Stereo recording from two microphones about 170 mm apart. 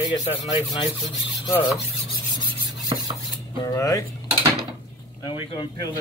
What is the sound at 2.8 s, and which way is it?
Cutlery, 25° right (ahead or behind).